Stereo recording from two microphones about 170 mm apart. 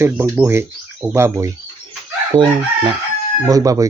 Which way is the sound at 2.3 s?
25° right (ahead or behind).